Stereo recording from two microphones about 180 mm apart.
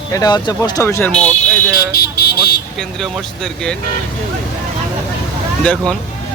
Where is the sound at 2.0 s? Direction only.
65° left (ahead or behind).